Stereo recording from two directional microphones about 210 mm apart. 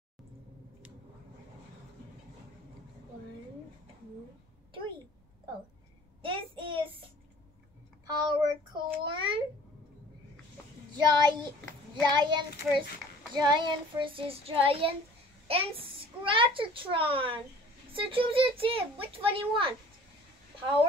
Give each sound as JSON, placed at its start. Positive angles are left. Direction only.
{"t": 4.7, "sound": "a woman's voice", "side_deg": -25}
{"t": 6.2, "sound": "child singing", "side_deg": -25}
{"t": 8.1, "sound": "child singing", "side_deg": -20}
{"t": 11.0, "sound": "a child's voice", "side_deg": -20}